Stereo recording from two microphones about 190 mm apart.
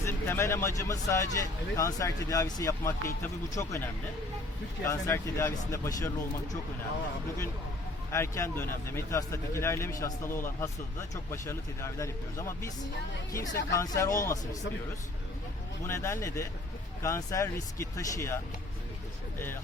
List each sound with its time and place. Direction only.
0.0 s speech: 15° left (ahead or behind)
4.9 s speech: 15° left (ahead or behind)
8.1 s speech: 15° left (ahead or behind)
15.9 s speech: 15° left (ahead or behind)